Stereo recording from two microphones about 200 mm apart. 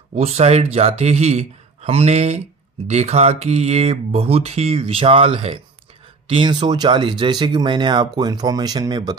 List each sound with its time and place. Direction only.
0.1 s speech: 30° right (ahead or behind)